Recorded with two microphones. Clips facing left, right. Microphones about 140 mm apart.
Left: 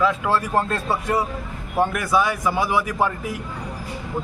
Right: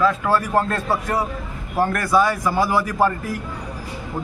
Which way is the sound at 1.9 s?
10° left (ahead or behind).